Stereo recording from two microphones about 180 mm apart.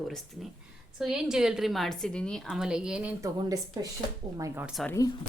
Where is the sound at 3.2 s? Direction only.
20° right (ahead or behind).